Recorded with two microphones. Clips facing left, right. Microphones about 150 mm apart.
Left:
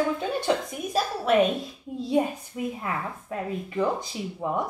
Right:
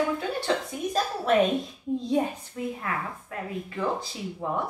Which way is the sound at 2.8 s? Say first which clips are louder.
Left 1 dB; 20° left (ahead or behind).